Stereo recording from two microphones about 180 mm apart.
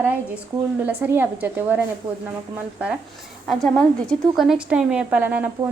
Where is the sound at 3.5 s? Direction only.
5° left (ahead or behind).